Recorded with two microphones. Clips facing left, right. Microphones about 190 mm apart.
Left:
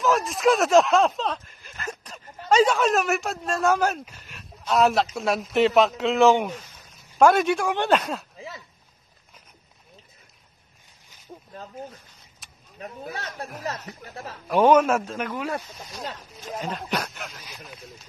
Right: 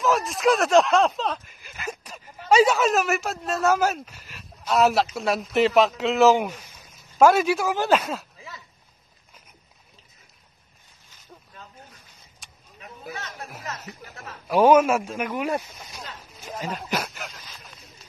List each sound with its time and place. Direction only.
0.0 s speech: centre (ahead or behind)
12.4 s a sound: centre (ahead or behind)
13.1 s chatter: 35° left (ahead or behind)
13.9 s speech: 40° left (ahead or behind)
14.5 s a man's voice: 10° right (ahead or behind)
16.4 s speech: 5° right (ahead or behind)